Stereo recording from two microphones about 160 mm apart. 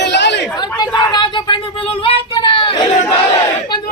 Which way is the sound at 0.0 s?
90° left.